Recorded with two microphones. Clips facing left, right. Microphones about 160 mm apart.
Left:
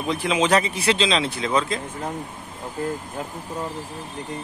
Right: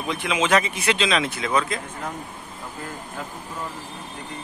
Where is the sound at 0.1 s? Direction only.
35° left (ahead or behind).